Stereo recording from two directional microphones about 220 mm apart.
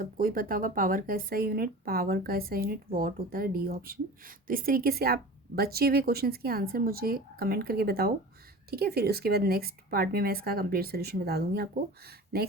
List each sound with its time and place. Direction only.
0.0 s speech: 40° right (ahead or behind)